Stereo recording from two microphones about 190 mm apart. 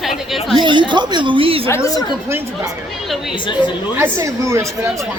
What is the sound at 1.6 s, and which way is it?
Speech, 15° left (ahead or behind).